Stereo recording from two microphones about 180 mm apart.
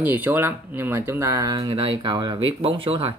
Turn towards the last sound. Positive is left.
turn(degrees=-30)  # may be behind; listen again after turning